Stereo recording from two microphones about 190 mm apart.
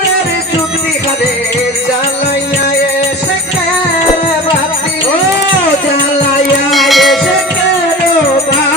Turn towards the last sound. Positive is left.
turn(degrees=0)  # may be behind; listen again after turning